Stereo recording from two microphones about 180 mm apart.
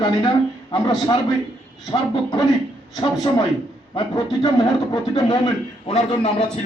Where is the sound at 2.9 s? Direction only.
25° left (ahead or behind).